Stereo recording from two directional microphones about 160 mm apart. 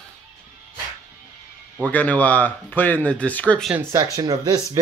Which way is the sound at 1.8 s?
10° left (ahead or behind).